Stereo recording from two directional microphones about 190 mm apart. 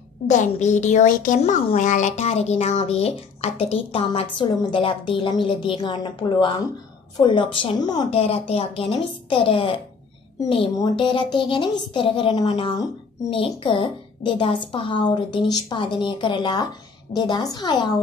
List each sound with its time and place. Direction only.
0.3 s a woman's voice: 40° left (ahead or behind); by 17.9 s 20° left (ahead or behind)